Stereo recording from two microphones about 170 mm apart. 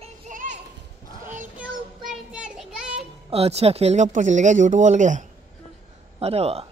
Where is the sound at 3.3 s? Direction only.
35° right (ahead or behind).